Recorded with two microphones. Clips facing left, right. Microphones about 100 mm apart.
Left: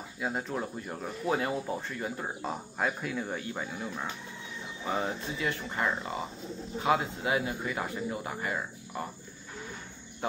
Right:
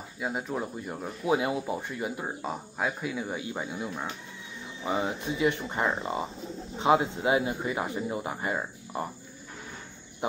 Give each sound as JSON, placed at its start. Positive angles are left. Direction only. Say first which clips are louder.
{"t": 0.2, "sound": "speech", "louder": "right 1 dB", "side_deg": -5}